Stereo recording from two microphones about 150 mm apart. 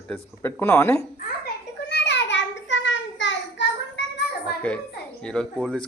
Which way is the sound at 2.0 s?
90° left.